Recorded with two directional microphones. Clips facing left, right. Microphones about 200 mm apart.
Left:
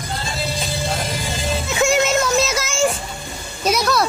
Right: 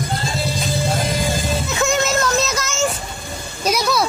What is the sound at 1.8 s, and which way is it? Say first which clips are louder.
Music: left 2 dB; 10° left (ahead or behind).